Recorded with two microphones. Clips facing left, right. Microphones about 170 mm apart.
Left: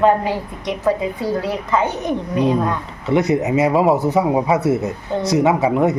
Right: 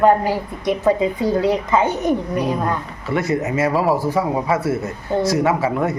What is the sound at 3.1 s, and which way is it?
Speech, 20° left (ahead or behind).